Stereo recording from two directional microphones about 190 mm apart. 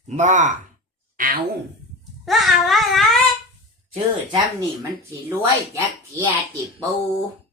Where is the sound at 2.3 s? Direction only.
Centre (ahead or behind).